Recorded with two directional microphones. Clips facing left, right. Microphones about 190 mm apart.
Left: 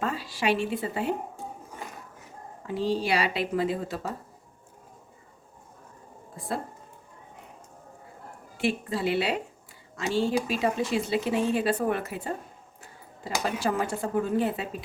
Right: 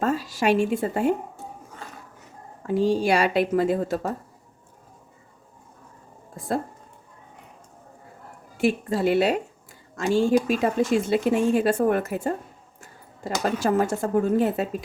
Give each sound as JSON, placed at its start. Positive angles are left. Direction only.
{"t": 0.0, "sound": "a woman's voice", "side_deg": -45}
{"t": 2.6, "sound": "speech", "side_deg": -45}
{"t": 8.5, "sound": "speech", "side_deg": -45}
{"t": 13.4, "sound": "speech", "side_deg": -45}